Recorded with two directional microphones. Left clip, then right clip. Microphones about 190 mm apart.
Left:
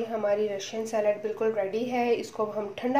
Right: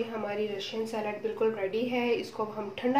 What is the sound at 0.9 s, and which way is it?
A woman's voice, 30° left (ahead or behind).